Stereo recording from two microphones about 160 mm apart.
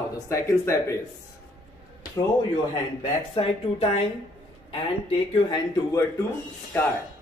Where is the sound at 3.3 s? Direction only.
35° left (ahead or behind).